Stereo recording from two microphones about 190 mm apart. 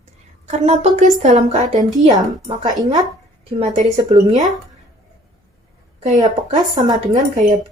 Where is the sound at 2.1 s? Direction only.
25° right (ahead or behind).